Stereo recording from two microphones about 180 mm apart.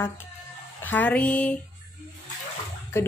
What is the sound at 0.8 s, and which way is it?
Speech, 10° left (ahead or behind).